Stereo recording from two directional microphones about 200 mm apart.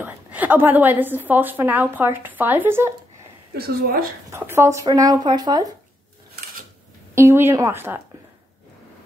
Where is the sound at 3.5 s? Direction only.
50° right (ahead or behind).